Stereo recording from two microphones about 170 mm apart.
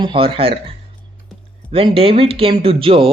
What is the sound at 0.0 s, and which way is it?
Speech, 30° right (ahead or behind).